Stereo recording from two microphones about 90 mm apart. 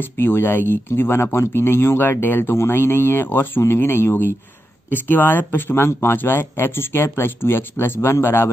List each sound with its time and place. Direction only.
0.2 s speech: 25° left (ahead or behind)